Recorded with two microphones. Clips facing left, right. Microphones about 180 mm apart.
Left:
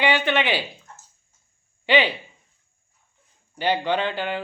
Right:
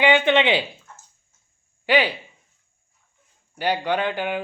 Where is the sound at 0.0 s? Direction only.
20° right (ahead or behind).